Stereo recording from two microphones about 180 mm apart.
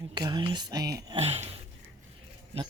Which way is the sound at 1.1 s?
35° right (ahead or behind).